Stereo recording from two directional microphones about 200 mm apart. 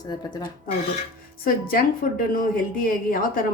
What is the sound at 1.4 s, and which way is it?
A woman's voice, 45° left (ahead or behind).